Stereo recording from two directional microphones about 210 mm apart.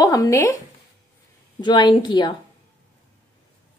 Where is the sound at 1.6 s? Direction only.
20° left (ahead or behind).